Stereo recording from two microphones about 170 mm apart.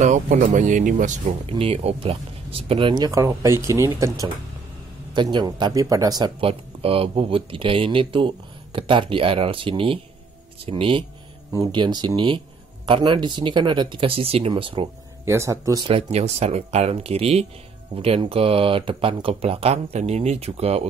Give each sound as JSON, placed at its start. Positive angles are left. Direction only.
{"t": 0.3, "sound": "speech", "side_deg": -50}
{"t": 1.5, "sound": "speech", "side_deg": -35}
{"t": 5.1, "sound": "speech", "side_deg": -25}
{"t": 15.2, "sound": "speech", "side_deg": -15}
{"t": 15.8, "sound": "speech", "side_deg": -35}